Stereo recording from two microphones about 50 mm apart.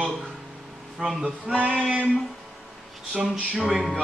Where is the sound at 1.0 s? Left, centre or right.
Centre.